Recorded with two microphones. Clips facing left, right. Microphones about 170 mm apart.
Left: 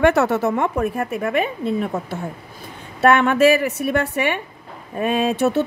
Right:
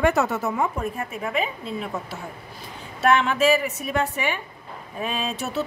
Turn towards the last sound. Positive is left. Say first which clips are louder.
# left 9 dB
turn(degrees=60)  # may be behind; listen again after turning